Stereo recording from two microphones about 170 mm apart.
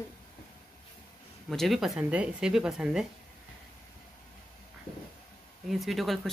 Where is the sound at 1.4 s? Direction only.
Centre (ahead or behind).